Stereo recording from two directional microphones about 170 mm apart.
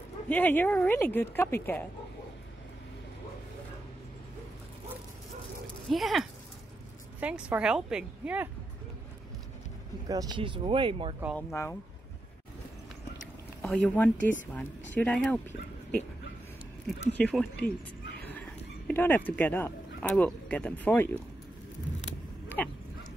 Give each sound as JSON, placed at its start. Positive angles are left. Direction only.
{"t": 0.3, "sound": "speech", "side_deg": 10}
{"t": 5.9, "sound": "a woman's voice", "side_deg": 0}
{"t": 10.0, "sound": "speech", "side_deg": -25}
{"t": 11.3, "sound": "speech", "side_deg": 15}
{"t": 13.6, "sound": "speech", "side_deg": 5}
{"t": 17.1, "sound": "speech", "side_deg": 5}
{"t": 18.9, "sound": "speech", "side_deg": 10}
{"t": 22.6, "sound": "dog", "side_deg": 10}